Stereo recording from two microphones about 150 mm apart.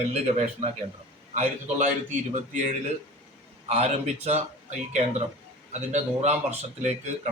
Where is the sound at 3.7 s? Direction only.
45° right (ahead or behind).